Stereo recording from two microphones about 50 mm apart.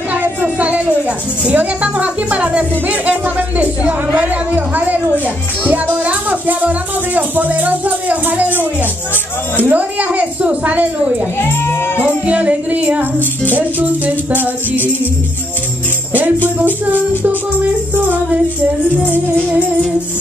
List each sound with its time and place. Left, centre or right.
0.1 s speech: right
9.7 s speech: right
11.3 s speech: left
12.0 s speech: right
16.4 s speech: right